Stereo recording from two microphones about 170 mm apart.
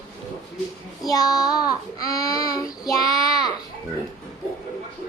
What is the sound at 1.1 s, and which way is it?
Child singing, 20° left (ahead or behind).